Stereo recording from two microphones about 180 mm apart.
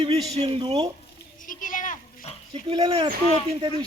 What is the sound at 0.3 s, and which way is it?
Speech, 30° right (ahead or behind).